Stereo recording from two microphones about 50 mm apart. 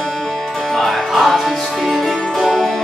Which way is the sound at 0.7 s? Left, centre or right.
Centre.